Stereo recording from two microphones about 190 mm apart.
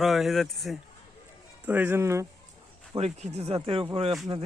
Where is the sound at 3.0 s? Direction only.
35° right (ahead or behind).